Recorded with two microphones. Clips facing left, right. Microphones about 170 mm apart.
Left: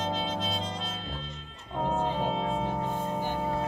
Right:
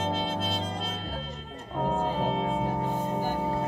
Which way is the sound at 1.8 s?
5° right (ahead or behind).